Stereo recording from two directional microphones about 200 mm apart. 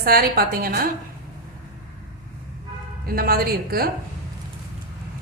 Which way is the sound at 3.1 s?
50° right (ahead or behind).